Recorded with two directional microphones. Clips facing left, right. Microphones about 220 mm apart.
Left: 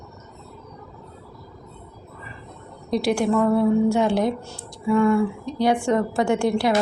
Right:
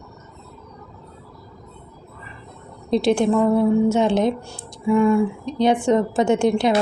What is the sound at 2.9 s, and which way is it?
A woman's voice, 25° right (ahead or behind).